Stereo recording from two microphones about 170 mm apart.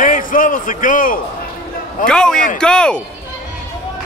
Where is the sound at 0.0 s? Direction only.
50° left (ahead or behind).